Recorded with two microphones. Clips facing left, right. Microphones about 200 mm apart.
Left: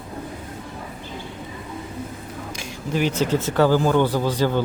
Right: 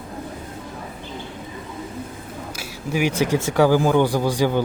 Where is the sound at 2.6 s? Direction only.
10° right (ahead or behind).